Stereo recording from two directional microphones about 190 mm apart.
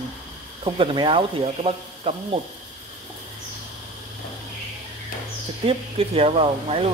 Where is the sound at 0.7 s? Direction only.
25° right (ahead or behind).